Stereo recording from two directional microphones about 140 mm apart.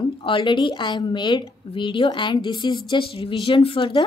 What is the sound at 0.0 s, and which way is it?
A woman's voice, 35° left (ahead or behind).